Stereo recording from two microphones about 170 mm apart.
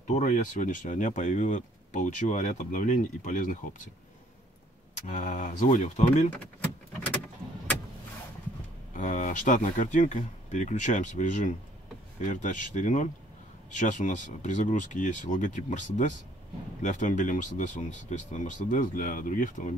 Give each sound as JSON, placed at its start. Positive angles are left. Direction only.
{"t": 0.0, "sound": "speech", "side_deg": 45}
{"t": 5.0, "sound": "speech", "side_deg": 45}
{"t": 8.9, "sound": "speech", "side_deg": 50}